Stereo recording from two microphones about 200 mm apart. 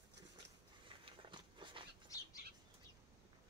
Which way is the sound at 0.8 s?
25° right (ahead or behind).